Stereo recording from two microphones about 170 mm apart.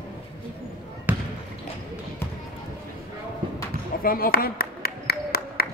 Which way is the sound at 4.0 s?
60° left (ahead or behind).